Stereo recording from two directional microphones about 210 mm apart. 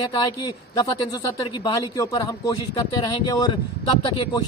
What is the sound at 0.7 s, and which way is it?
A man's voice, 15° left (ahead or behind).